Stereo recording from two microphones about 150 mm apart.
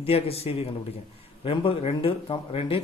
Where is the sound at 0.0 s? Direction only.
40° left (ahead or behind).